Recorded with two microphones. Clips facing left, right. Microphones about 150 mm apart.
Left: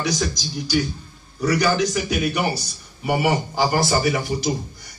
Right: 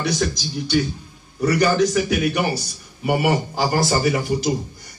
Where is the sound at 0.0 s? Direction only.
65° right (ahead or behind); by 4.2 s 40° right (ahead or behind).